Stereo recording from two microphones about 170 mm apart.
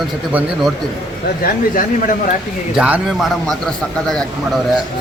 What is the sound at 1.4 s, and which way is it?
Speech, 55° left (ahead or behind).